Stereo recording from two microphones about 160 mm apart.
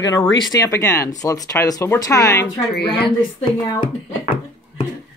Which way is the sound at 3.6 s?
30° left (ahead or behind).